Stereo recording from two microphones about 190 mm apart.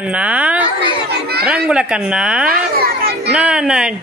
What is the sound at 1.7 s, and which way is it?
Speech, 5° right (ahead or behind).